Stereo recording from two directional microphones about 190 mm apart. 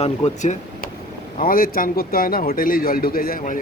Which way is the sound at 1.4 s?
50° left (ahead or behind).